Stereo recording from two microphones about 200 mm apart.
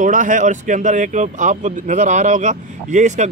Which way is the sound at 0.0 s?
40° right (ahead or behind).